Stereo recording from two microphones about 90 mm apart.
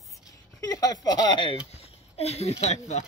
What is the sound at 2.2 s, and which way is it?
Speech, 90° left.